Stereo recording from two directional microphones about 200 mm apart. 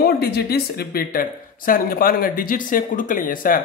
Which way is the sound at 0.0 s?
50° left (ahead or behind).